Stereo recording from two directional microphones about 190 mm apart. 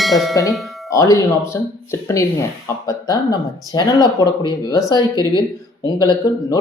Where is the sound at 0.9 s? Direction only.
15° left (ahead or behind).